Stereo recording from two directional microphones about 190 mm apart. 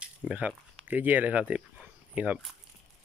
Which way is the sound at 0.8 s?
10° right (ahead or behind).